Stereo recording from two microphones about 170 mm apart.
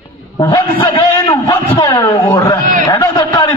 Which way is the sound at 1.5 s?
20° left (ahead or behind).